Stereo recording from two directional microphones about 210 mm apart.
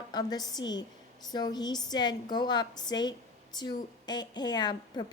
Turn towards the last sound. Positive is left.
turn(degrees=20)  # may be behind; listen again after turning